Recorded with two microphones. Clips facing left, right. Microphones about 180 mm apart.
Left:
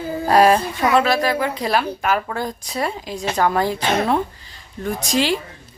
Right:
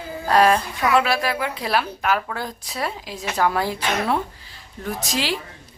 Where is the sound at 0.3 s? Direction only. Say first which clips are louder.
Left 3 dB; 10° left (ahead or behind).